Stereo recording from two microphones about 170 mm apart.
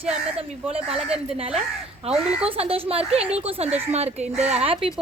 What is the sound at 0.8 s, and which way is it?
Speech, 5° right (ahead or behind).